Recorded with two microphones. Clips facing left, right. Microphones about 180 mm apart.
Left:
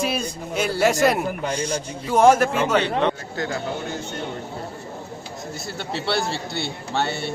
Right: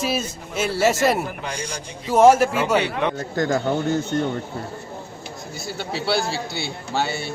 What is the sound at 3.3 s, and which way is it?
Speech, 45° right (ahead or behind).